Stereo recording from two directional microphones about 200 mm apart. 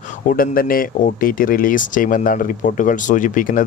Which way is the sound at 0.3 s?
45° left (ahead or behind).